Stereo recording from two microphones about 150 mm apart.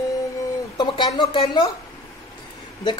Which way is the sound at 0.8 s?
30° left (ahead or behind).